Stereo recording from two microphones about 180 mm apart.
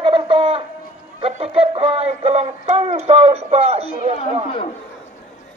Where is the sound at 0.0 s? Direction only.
30° right (ahead or behind).